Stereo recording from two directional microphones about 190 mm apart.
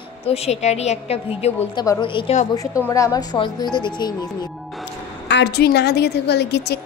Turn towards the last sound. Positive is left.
turn(degrees=60)  # may be behind; listen again after turning